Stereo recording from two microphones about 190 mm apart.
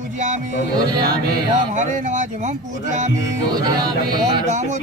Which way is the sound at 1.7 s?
40° right (ahead or behind).